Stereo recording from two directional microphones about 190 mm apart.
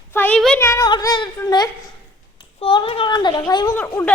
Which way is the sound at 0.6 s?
15° left (ahead or behind).